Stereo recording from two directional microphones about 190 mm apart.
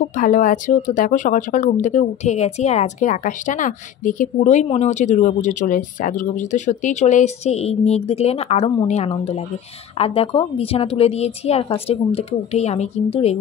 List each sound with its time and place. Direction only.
0.2 s speech: 45° left (ahead or behind)